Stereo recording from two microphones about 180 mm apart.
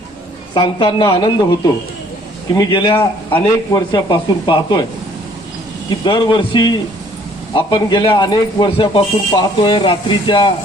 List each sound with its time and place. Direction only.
0.5 s speech: 25° left (ahead or behind)
3.0 s speech: 15° left (ahead or behind)
5.9 s speech: 25° left (ahead or behind)